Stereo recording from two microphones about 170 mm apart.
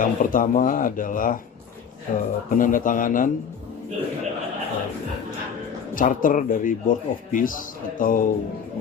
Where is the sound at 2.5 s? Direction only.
50° left (ahead or behind).